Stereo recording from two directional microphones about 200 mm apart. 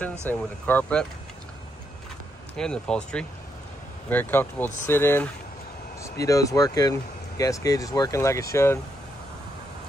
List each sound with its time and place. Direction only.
0.3 s speech: 10° left (ahead or behind)
2.5 s speech: 5° left (ahead or behind)